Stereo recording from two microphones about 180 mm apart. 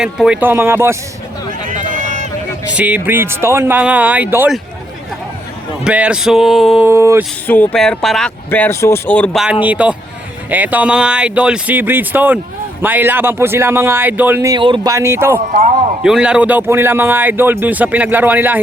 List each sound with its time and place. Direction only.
0.0 s speech: 5° right (ahead or behind)
1.6 s run: 45° right (ahead or behind)
2.6 s speech: 5° right (ahead or behind)
5.8 s a sound: 5° right (ahead or behind)
6.8 s speech: 15° right (ahead or behind)
7.4 s a sound: 10° left (ahead or behind)
8.4 s speech: 10° left (ahead or behind)
9.6 s speech: 5° right (ahead or behind)
14.5 s speech: 25° right (ahead or behind)
14.9 s speech: 15° right (ahead or behind)
15.5 s a man's voice: 45° right (ahead or behind)
16.0 s speech: 5° right (ahead or behind)